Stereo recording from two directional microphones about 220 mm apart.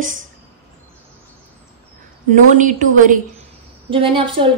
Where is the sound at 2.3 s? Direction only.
35° right (ahead or behind).